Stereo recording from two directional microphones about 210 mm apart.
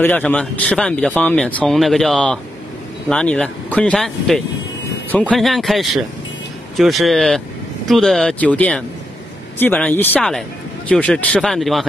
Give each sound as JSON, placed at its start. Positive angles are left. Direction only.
{"t": 0.0, "sound": "speech", "side_deg": 5}